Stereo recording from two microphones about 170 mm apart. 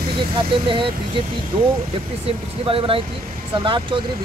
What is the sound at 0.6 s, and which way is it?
Speech, 30° right (ahead or behind).